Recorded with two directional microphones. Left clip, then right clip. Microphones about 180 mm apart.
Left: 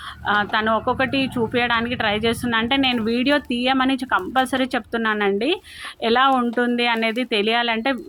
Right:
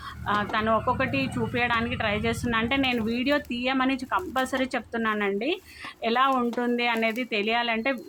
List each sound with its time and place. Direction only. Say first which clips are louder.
0.3 s speech: left 5 dB; 20° left (ahead or behind)